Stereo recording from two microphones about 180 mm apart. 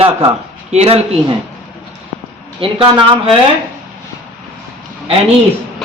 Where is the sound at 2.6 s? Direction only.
25° right (ahead or behind).